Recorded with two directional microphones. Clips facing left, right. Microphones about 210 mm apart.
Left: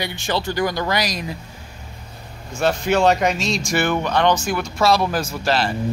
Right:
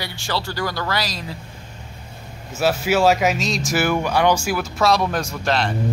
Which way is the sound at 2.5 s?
5° right (ahead or behind).